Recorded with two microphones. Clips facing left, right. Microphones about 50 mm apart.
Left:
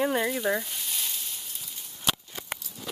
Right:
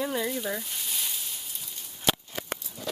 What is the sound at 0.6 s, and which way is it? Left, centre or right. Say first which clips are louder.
Sizzle: left 1 dB; centre.